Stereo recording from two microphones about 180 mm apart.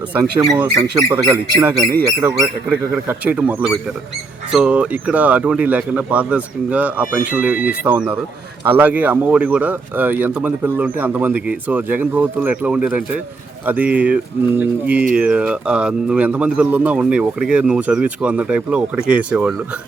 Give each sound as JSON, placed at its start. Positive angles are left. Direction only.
{"t": 0.1, "sound": "speech", "side_deg": -10}